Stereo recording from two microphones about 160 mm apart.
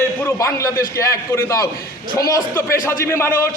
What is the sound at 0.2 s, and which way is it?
A man's voice, 20° left (ahead or behind).